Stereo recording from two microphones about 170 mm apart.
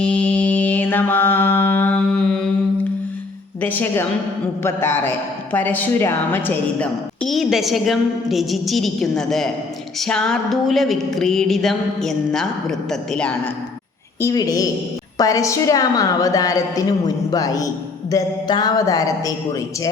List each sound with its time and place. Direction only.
0.0 s mantra: 5° left (ahead or behind)
3.6 s a woman's voice: 10° left (ahead or behind)
14.2 s a woman's voice: 20° left (ahead or behind)